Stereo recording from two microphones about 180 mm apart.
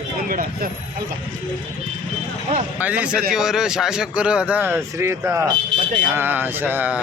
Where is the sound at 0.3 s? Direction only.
50° right (ahead or behind).